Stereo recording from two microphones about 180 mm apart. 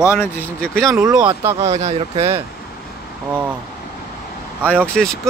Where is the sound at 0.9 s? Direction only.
20° right (ahead or behind).